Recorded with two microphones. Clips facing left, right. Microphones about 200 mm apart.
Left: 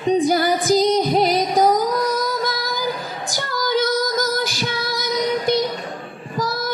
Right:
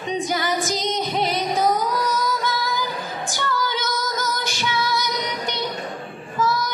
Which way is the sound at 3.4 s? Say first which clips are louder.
Left 6 dB; 40° left (ahead or behind).